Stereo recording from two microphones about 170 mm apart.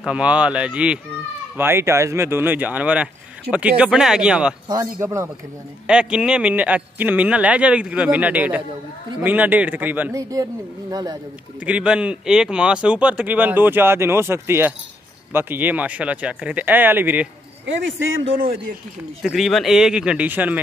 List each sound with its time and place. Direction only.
0.0 s a man's voice: 5° right (ahead or behind)
5.0 s speech: 15° right (ahead or behind)
5.9 s speech: 5° right (ahead or behind); by 11.1 s 20° right (ahead or behind)
11.6 s speech: 5° right (ahead or behind)
19.2 s a man's voice: centre (ahead or behind)